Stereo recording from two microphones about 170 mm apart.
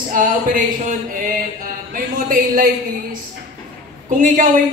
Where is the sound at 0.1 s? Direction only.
50° right (ahead or behind).